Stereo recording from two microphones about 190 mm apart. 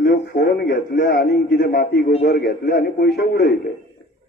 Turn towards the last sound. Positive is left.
turn(degrees=55)  # may be behind; listen again after turning